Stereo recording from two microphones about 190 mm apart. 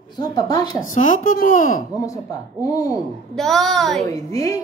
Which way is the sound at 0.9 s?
45° left (ahead or behind).